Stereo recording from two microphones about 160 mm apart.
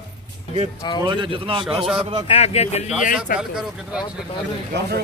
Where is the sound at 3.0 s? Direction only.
60° left (ahead or behind).